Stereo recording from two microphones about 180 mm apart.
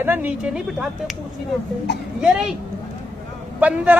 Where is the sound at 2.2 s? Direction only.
5° right (ahead or behind).